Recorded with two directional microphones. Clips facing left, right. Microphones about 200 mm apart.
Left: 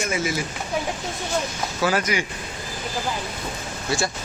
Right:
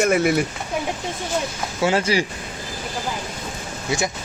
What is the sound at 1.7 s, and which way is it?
Speech, 25° right (ahead or behind).